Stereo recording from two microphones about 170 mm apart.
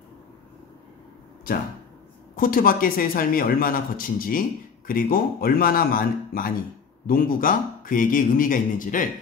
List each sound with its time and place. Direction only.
2.3 s a man's voice: 55° left (ahead or behind)